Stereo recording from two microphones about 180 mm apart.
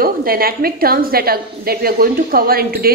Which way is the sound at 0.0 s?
55° right (ahead or behind).